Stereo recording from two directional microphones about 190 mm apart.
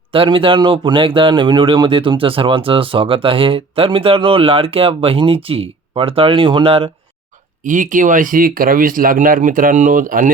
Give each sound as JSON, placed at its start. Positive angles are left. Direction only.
{"t": 0.1, "sound": "speech", "side_deg": -30}
{"t": 7.6, "sound": "speech", "side_deg": -45}